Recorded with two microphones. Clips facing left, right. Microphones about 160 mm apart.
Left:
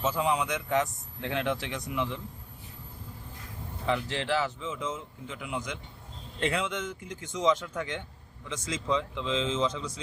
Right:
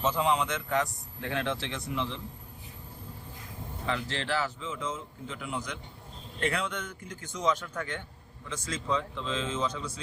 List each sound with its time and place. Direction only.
0.0 s speech: 5° left (ahead or behind)
3.8 s speech: 15° left (ahead or behind)